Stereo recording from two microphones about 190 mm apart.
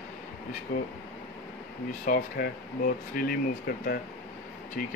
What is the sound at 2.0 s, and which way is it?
Speech, 55° left (ahead or behind).